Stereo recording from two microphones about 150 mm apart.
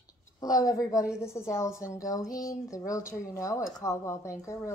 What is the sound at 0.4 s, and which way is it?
Speech, 25° left (ahead or behind).